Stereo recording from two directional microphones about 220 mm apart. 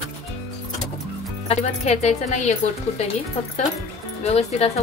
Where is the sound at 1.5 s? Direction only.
30° left (ahead or behind).